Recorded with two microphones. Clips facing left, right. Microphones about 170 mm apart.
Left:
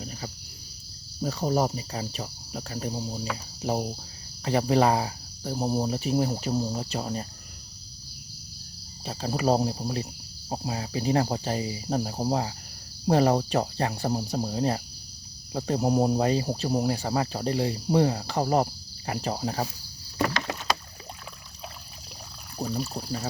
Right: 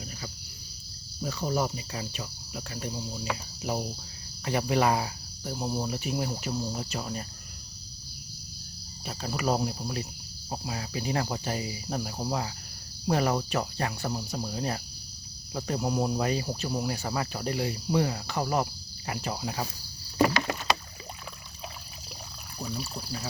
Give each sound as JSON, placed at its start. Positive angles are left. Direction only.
{"t": 1.2, "sound": "speech", "side_deg": 35}
{"t": 9.0, "sound": "speech", "side_deg": 35}
{"t": 20.2, "sound": "rowboat", "side_deg": -10}
{"t": 22.6, "sound": "speech", "side_deg": 35}